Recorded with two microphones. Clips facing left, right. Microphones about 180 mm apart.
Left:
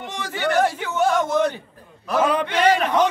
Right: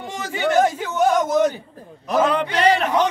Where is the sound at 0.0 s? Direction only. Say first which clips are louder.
Right 2 dB; 5° right (ahead or behind).